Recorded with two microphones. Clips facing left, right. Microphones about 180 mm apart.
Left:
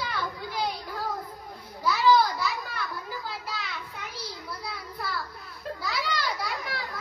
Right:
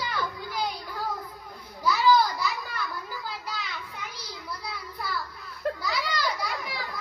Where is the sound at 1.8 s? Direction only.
Centre (ahead or behind).